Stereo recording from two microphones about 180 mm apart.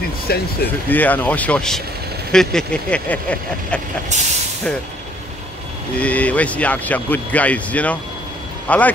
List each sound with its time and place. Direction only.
0.3 s speech: 60° left (ahead or behind)
0.8 s speech: 10° left (ahead or behind)
4.1 s speech: 40° right (ahead or behind)
5.9 s speech: 5° left (ahead or behind)